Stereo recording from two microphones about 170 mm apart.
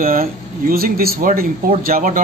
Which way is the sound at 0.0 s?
55° right (ahead or behind).